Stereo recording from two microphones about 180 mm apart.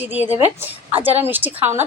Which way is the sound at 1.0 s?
10° right (ahead or behind).